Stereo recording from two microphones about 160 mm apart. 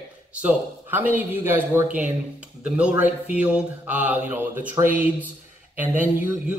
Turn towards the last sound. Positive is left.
turn(degrees=-10)  # may be behind; listen again after turning